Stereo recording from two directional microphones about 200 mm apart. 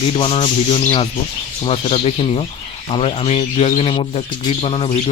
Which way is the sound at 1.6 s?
30° left (ahead or behind).